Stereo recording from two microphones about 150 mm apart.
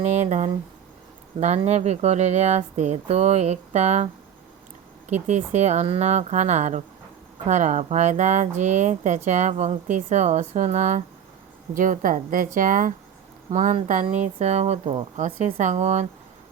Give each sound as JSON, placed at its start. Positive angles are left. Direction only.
{"t": 0.0, "sound": "a woman's voice", "side_deg": -50}